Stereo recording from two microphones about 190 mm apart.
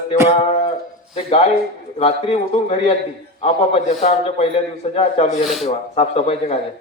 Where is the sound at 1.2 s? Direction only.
35° left (ahead or behind).